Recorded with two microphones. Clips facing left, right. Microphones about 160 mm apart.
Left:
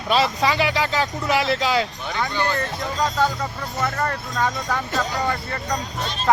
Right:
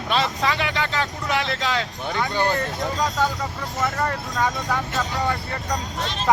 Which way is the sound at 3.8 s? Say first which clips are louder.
Even; 10° right (ahead or behind).